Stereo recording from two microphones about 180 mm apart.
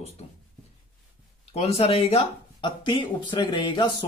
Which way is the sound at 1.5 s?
35° left (ahead or behind).